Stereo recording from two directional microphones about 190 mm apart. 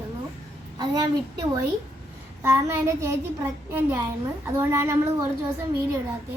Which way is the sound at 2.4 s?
15° right (ahead or behind).